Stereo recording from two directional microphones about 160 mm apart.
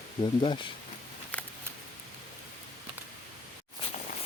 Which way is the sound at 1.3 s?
10° left (ahead or behind).